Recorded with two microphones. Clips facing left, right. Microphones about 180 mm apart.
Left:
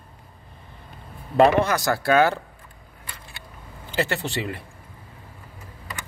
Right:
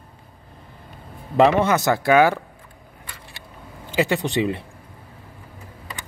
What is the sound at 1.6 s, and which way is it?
Speech, 20° right (ahead or behind).